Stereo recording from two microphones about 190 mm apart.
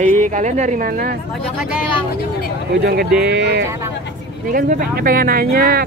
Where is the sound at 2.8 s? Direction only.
60° right (ahead or behind).